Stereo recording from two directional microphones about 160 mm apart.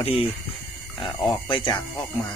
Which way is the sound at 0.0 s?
35° left (ahead or behind).